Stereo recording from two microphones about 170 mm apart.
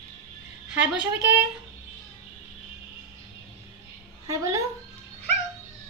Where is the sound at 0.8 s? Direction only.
10° right (ahead or behind).